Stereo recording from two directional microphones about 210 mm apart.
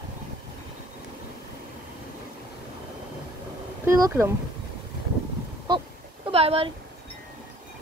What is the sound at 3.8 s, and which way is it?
Speech, 15° right (ahead or behind).